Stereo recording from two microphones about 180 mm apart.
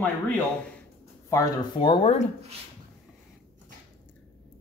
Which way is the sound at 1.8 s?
30° left (ahead or behind).